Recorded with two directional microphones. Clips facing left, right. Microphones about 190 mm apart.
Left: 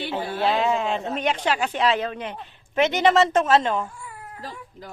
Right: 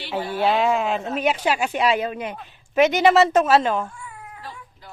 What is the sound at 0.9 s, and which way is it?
Speech, 10° right (ahead or behind).